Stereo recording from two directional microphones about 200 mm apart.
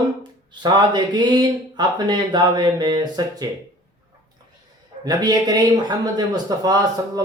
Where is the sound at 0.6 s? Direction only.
20° right (ahead or behind).